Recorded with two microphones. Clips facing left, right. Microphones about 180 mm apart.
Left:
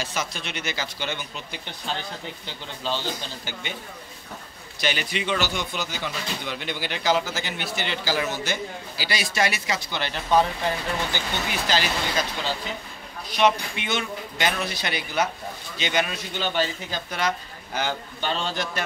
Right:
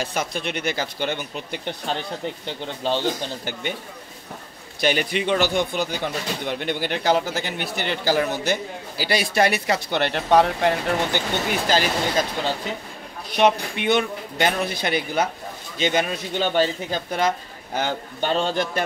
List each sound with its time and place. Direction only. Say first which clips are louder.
0.0 s speech: right 5 dB; 55° right (ahead or behind)
4.7 s speech: right 6 dB; 55° right (ahead or behind)